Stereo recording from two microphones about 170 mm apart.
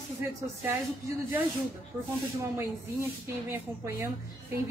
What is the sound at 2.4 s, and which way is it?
A woman's voice, 20° right (ahead or behind).